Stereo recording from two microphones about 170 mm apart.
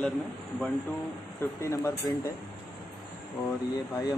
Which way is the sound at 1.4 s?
15° left (ahead or behind).